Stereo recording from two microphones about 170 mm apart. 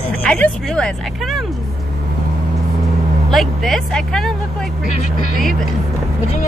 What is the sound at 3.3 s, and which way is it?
Speech, centre (ahead or behind).